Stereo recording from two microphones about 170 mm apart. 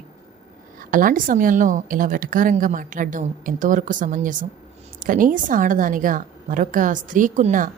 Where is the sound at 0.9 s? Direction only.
55° right (ahead or behind).